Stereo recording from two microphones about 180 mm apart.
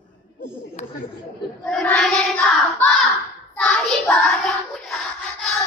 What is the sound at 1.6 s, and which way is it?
Child singing, 5° left (ahead or behind).